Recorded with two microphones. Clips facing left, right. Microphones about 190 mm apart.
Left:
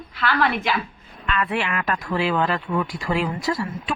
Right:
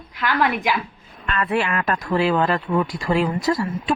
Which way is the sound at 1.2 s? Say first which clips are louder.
Right 2 dB; 40° right (ahead or behind).